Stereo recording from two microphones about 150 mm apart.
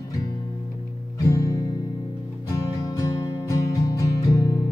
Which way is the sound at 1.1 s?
20° left (ahead or behind).